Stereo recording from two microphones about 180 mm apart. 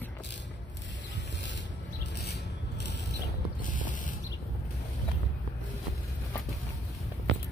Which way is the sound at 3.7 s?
45° left (ahead or behind).